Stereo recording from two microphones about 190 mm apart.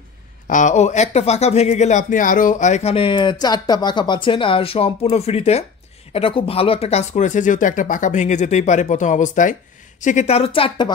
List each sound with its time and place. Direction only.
0.5 s speech: 40° left (ahead or behind)